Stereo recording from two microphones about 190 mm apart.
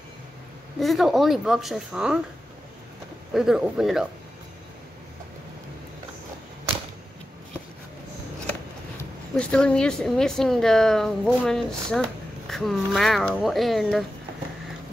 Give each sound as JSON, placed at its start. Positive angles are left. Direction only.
{"t": 0.7, "sound": "speech", "side_deg": 0}
{"t": 3.3, "sound": "speech", "side_deg": 0}
{"t": 9.4, "sound": "speech", "side_deg": 5}